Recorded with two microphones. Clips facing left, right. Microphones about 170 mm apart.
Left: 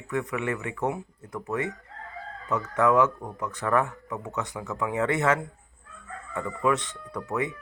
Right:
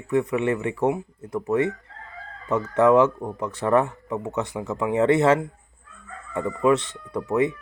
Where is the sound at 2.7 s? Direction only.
25° right (ahead or behind).